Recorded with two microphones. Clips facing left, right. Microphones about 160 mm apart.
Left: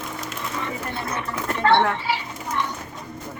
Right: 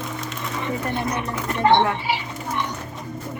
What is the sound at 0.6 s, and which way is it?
Speech, 15° right (ahead or behind).